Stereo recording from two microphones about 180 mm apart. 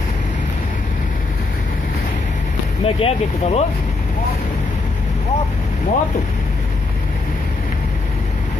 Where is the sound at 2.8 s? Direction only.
35° left (ahead or behind).